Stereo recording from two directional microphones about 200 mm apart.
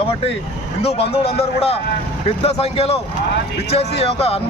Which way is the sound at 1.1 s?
30° left (ahead or behind).